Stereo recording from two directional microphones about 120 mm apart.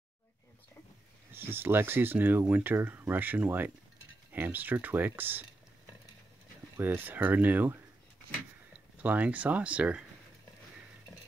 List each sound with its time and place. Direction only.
1.3 s speech: 20° right (ahead or behind)
6.8 s speech: 15° right (ahead or behind)
8.9 s speech: 10° right (ahead or behind)